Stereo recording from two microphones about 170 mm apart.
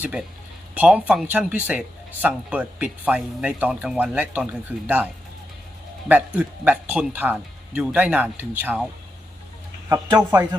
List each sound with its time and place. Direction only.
0.0 s speech: 5° right (ahead or behind)
6.1 s speech: 10° right (ahead or behind)
9.9 s speech: 20° right (ahead or behind)